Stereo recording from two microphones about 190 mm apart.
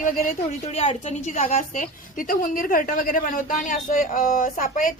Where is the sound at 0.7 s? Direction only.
35° left (ahead or behind).